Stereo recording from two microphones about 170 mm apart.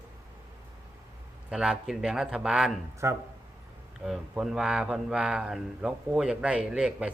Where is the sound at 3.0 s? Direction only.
15° right (ahead or behind).